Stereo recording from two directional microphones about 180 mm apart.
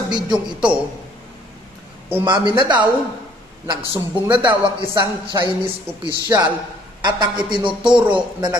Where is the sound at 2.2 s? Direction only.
25° right (ahead or behind).